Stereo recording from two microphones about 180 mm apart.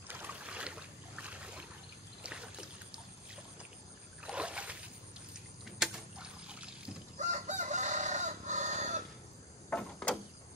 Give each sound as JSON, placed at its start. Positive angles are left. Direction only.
{"t": 0.1, "sound": "boat", "side_deg": -10}
{"t": 4.3, "sound": "rowboat", "side_deg": -5}
{"t": 7.2, "sound": "chicken", "side_deg": -40}
{"t": 9.7, "sound": "sliding door", "side_deg": 5}